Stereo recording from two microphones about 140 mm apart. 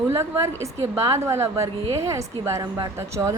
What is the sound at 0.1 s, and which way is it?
A woman's voice, 20° right (ahead or behind).